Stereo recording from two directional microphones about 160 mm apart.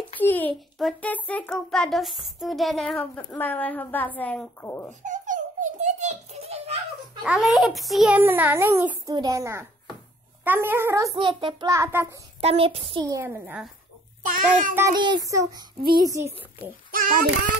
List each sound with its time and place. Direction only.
0.2 s a sound: 10° left (ahead or behind)
0.7 s a child's voice: 5° left (ahead or behind)
5.0 s a sound: 50° right (ahead or behind)
7.2 s a child's voice: 5° right (ahead or behind)
8.2 s a child's voice: 10° right (ahead or behind)
11.1 s child singing: 30° right (ahead or behind)
11.7 s a child's voice: 15° right (ahead or behind)
12.4 s child singing: 40° right (ahead or behind)
13.0 s a child's voice: 15° right (ahead or behind)
14.3 s a child's voice: 60° right (ahead or behind)
15.0 s a woman's voice: 25° right (ahead or behind)
16.9 s a child's voice: 65° right (ahead or behind)